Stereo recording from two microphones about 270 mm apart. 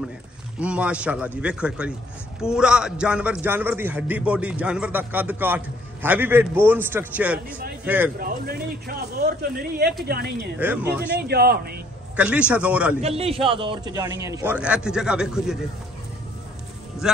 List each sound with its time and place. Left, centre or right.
0.6 s a man's voice: centre
8.2 s speech: right
10.6 s a man's voice: centre
11.1 s speech: right
12.2 s a man's voice: centre
13.0 s a man's voice: right; by 15.5 s centre
17.0 s a man's voice: centre